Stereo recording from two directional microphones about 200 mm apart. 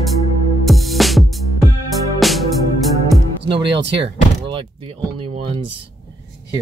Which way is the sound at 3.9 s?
25° right (ahead or behind).